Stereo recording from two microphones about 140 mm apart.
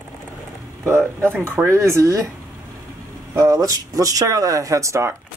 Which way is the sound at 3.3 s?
25° right (ahead or behind).